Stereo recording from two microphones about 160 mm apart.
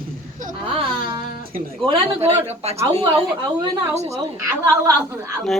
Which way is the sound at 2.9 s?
25° right (ahead or behind).